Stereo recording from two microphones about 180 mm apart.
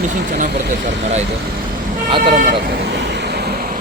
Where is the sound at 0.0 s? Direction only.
45° right (ahead or behind).